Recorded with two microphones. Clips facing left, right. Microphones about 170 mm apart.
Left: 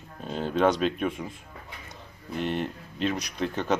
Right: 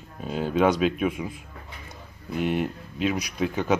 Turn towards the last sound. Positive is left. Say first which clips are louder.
# right 3 dB
turn(degrees=-5)  # may be behind; listen again after turning